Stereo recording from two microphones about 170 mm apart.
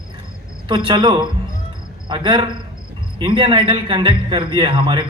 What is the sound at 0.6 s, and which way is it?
A man's voice, 30° right (ahead or behind).